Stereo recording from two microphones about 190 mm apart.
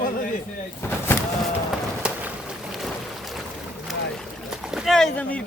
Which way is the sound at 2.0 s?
5° right (ahead or behind).